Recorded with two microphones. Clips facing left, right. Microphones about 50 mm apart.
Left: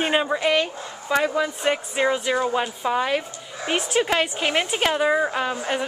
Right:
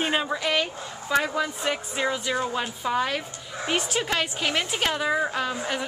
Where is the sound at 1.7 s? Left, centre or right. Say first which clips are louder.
Left 5 dB; left.